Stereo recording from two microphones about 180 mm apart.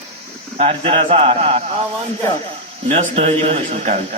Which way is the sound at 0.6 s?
30° right (ahead or behind).